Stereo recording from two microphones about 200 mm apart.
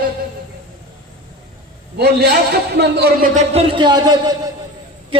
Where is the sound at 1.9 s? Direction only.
55° right (ahead or behind).